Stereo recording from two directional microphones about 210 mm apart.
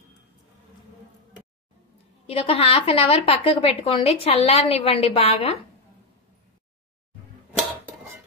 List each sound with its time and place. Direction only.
2.2 s a woman's voice: 25° left (ahead or behind)